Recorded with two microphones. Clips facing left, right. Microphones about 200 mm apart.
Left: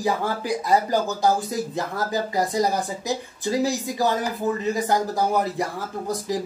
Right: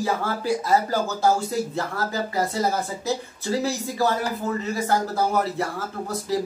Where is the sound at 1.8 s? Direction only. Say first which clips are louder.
Left 1 dB; 15° left (ahead or behind).